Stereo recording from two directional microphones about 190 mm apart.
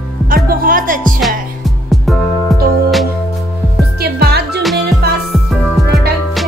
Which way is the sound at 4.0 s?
55° right (ahead or behind).